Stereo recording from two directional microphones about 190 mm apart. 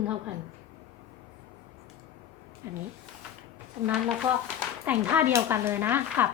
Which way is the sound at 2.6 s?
15° right (ahead or behind).